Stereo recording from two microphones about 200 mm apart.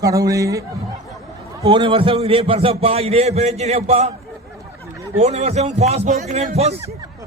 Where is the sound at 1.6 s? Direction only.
25° right (ahead or behind).